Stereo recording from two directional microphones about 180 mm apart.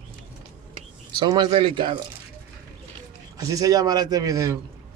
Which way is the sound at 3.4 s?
20° right (ahead or behind).